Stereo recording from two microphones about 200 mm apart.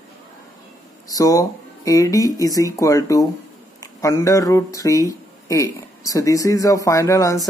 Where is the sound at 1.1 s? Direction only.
15° left (ahead or behind).